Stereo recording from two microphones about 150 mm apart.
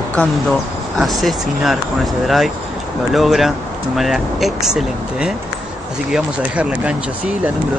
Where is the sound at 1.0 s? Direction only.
Centre (ahead or behind).